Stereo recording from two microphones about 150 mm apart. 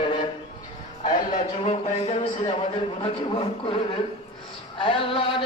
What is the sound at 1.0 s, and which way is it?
A man's voice, 45° left (ahead or behind).